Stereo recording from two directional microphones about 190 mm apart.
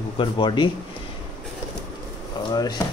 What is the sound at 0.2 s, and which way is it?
Speech, 25° left (ahead or behind).